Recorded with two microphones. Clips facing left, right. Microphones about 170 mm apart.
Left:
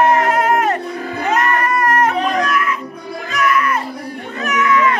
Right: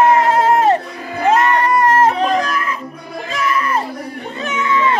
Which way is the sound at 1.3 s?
25° right (ahead or behind).